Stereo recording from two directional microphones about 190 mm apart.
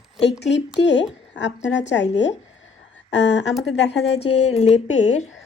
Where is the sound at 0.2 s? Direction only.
65° left (ahead or behind).